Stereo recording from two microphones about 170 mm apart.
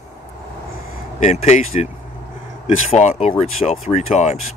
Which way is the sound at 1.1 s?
40° left (ahead or behind).